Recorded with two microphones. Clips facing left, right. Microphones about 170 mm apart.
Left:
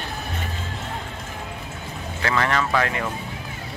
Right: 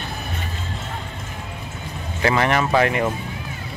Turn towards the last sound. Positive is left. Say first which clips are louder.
# right 5 dB
turn(degrees=-25)  # may be behind; listen again after turning